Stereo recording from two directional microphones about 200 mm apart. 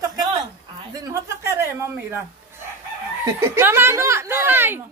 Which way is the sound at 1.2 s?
15° right (ahead or behind).